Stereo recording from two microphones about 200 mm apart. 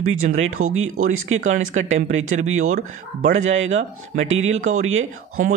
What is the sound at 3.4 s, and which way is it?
Speech, 80° right.